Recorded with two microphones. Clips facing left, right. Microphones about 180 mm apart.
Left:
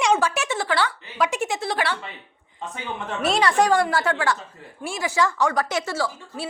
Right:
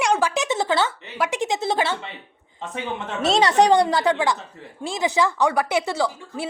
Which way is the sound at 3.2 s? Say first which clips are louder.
Right 3 dB; 25° right (ahead or behind).